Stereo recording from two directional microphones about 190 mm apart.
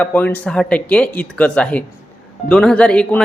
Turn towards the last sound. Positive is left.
turn(degrees=5)  # may be behind; listen again after turning